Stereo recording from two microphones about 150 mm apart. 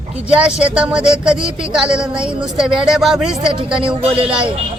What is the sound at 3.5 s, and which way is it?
Speech, 35° right (ahead or behind).